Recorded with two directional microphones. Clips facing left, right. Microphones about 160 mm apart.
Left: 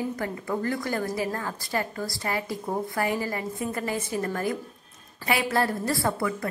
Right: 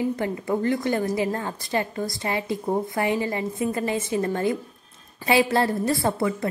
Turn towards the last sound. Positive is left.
turn(degrees=-25)  # may be behind; listen again after turning